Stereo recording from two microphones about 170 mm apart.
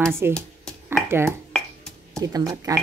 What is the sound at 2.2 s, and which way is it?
Speech, 20° right (ahead or behind).